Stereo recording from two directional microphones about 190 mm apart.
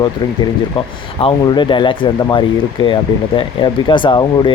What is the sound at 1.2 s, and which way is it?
Speech, 25° left (ahead or behind).